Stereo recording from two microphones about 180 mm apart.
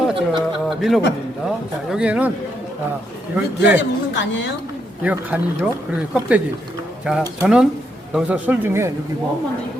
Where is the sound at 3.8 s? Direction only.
90° left.